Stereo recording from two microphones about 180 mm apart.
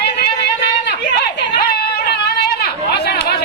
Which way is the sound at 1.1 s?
70° left (ahead or behind).